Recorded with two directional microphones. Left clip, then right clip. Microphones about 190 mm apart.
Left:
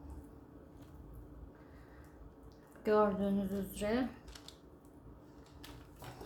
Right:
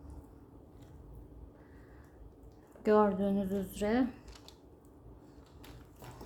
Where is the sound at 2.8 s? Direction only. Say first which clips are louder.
Right 3 dB; 35° right (ahead or behind).